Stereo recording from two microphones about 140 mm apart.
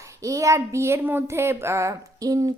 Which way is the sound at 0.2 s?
20° right (ahead or behind).